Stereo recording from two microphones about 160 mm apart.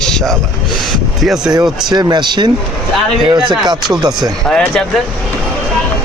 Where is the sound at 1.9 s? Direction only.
25° right (ahead or behind).